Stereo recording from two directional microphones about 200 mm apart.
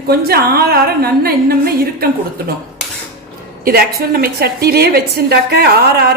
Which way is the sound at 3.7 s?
50° right (ahead or behind).